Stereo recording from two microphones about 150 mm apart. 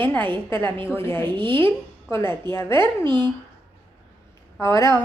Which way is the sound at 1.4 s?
35° right (ahead or behind).